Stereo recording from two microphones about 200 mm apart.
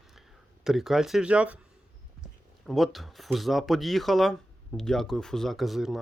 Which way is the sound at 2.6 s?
Centre (ahead or behind).